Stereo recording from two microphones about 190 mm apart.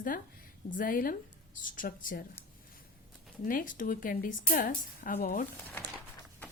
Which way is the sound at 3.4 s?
45° left (ahead or behind).